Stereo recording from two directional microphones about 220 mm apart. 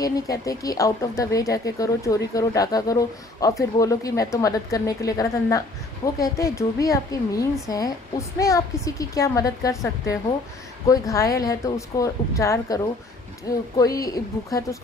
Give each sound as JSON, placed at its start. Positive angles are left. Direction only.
{"t": 0.0, "sound": "speech", "side_deg": 15}